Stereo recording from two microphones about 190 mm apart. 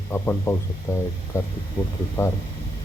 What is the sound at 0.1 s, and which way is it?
Speech, 10° left (ahead or behind).